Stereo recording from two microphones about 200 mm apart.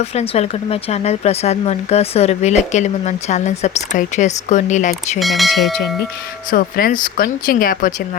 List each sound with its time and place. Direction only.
0.0 s speech: 30° left (ahead or behind)
5.2 s speech: centre (ahead or behind)
6.5 s speech: 45° left (ahead or behind)